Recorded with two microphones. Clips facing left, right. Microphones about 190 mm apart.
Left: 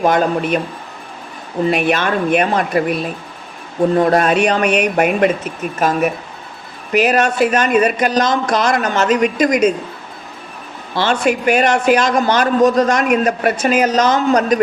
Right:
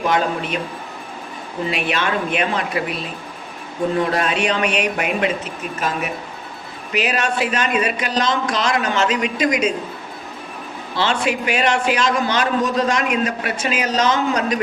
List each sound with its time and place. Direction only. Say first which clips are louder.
0.0 s a man's voice: left 5 dB; 50° left (ahead or behind)
1.7 s a man's voice: left 4 dB; 45° left (ahead or behind)
6.9 s a man's voice: left 7 dB; 45° left (ahead or behind)
10.9 s a man's voice: left 4 dB; 45° left (ahead or behind)